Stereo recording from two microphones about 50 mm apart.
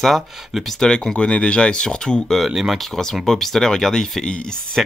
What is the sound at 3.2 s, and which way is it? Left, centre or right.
Speech, centre.